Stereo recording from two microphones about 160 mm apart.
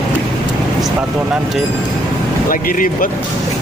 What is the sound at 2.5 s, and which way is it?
Speech, 60° left (ahead or behind).